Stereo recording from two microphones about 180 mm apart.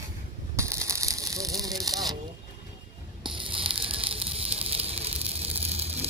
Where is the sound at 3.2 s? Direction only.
30° right (ahead or behind).